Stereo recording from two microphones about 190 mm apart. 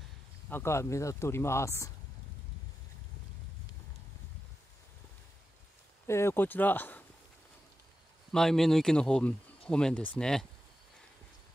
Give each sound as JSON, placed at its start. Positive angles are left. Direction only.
{"t": 0.5, "sound": "speech", "side_deg": 15}
{"t": 6.0, "sound": "speech", "side_deg": 15}
{"t": 8.3, "sound": "speech", "side_deg": 5}